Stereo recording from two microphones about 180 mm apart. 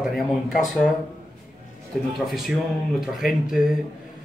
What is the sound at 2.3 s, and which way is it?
Speech, centre (ahead or behind).